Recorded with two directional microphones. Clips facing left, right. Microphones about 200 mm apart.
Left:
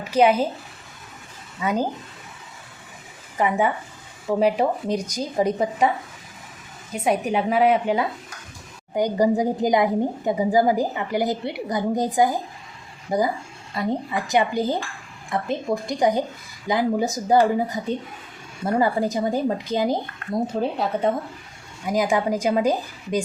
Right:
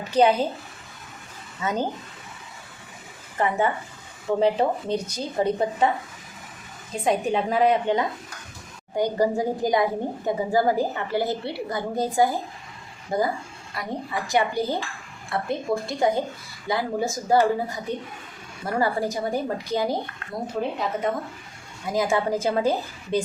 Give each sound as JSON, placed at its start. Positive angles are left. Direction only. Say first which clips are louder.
{"t": 0.1, "sound": "a woman's voice", "louder": "left 1 dB", "side_deg": 10}
{"t": 1.6, "sound": "a woman's voice", "louder": "left 3 dB", "side_deg": 10}
{"t": 3.3, "sound": "a woman's voice", "louder": "left 2 dB", "side_deg": 10}
{"t": 6.9, "sound": "a woman's voice", "louder": "left 1 dB", "side_deg": 5}
{"t": 13.7, "sound": "a woman's voice", "louder": "left 5 dB", "side_deg": 20}
{"t": 20.6, "sound": "speech", "louder": "right 1 dB", "side_deg": 35}
{"t": 21.8, "sound": "a woman's voice", "louder": "left 2 dB", "side_deg": 15}